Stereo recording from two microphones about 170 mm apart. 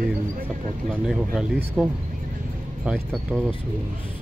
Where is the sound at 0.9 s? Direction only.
5° right (ahead or behind).